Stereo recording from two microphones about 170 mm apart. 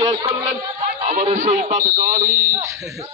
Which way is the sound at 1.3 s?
50° right (ahead or behind).